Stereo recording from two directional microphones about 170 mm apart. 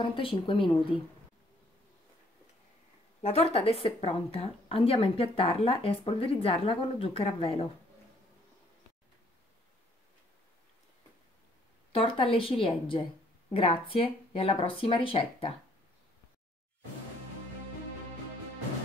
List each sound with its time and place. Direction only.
0.0 s speech: 30° left (ahead or behind)
3.2 s speech: 35° left (ahead or behind)
11.9 s speech: 35° left (ahead or behind)